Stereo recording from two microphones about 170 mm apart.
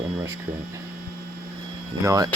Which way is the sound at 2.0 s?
20° right (ahead or behind).